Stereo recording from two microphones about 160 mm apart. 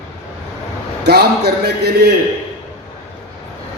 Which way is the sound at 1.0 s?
85° right.